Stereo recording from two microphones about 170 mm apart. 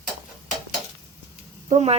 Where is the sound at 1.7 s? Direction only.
40° right (ahead or behind).